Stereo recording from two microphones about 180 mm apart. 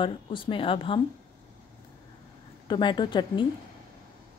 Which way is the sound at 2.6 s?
25° left (ahead or behind).